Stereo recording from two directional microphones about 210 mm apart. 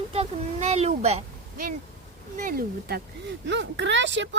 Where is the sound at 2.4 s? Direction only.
45° right (ahead or behind).